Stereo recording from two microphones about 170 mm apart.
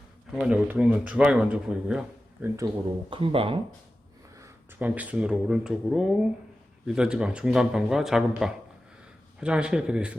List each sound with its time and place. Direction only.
0.3 s speech: 5° right (ahead or behind)
3.1 s speech: 30° right (ahead or behind)
4.4 s speech: 15° right (ahead or behind)